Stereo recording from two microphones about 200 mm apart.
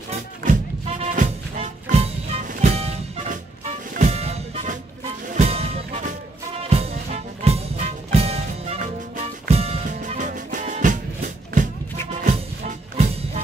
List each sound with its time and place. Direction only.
0.1 s music: 35° right (ahead or behind)